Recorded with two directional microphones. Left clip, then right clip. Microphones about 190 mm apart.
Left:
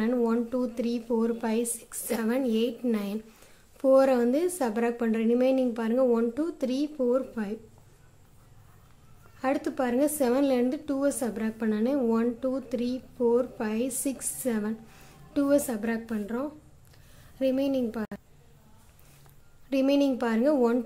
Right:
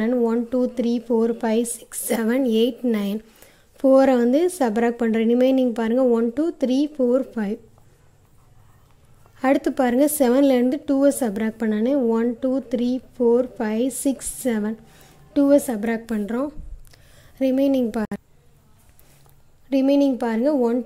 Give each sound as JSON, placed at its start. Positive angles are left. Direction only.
{"t": 0.0, "sound": "a woman's voice", "side_deg": -25}
{"t": 9.4, "sound": "a woman's voice", "side_deg": -35}
{"t": 16.9, "sound": "a sound", "side_deg": -30}
{"t": 19.7, "sound": "a woman's voice", "side_deg": -25}